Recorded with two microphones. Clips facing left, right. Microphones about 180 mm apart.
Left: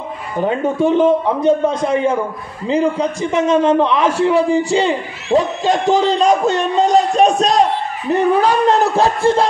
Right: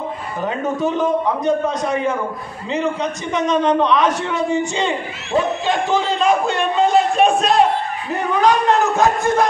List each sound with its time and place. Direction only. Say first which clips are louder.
0.5 s a man's voice: left 5 dB; 30° left (ahead or behind)